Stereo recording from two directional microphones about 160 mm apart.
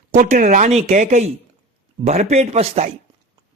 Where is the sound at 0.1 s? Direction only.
50° right (ahead or behind).